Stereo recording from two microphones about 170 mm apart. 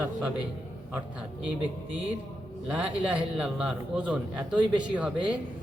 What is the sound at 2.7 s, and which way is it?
A man's voice, 5° right (ahead or behind).